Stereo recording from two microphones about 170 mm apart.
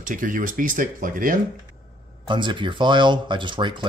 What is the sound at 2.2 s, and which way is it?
Speech, 25° right (ahead or behind).